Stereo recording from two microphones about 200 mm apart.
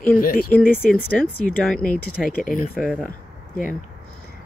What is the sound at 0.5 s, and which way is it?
Speech, 10° left (ahead or behind).